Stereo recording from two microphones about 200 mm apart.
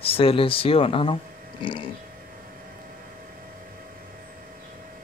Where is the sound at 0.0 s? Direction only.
30° left (ahead or behind).